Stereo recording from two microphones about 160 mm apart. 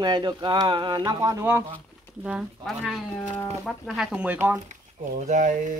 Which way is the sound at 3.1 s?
10° left (ahead or behind).